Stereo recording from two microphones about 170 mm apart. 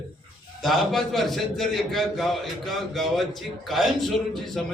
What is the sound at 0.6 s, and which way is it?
A man's voice, centre (ahead or behind).